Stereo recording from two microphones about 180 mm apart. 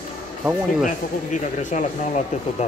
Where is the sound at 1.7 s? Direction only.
45° left (ahead or behind).